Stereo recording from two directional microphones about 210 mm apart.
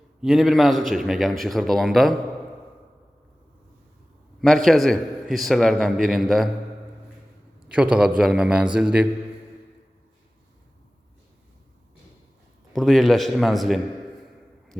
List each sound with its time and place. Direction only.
0.2 s a man's voice: centre (ahead or behind)
4.4 s a man's voice: centre (ahead or behind)
7.7 s a man's voice: 5° right (ahead or behind)
12.7 s a man's voice: centre (ahead or behind)